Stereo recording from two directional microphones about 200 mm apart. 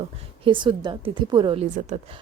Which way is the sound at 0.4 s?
25° right (ahead or behind).